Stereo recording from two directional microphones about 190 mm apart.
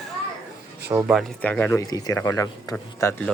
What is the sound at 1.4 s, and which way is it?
Speech, 10° left (ahead or behind).